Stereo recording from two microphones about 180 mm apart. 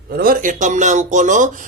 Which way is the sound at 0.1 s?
55° right (ahead or behind).